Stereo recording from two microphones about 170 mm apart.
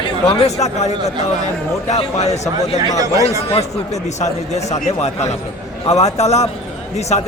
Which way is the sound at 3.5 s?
40° left (ahead or behind).